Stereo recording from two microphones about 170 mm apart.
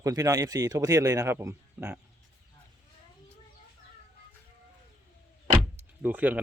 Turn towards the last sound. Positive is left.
turn(degrees=-10)  # may be behind; listen again after turning